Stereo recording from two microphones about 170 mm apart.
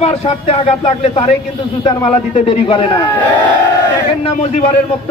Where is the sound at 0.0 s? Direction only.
35° left (ahead or behind).